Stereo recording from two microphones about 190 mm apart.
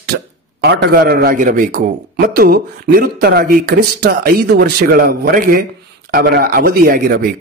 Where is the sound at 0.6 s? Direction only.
60° right (ahead or behind).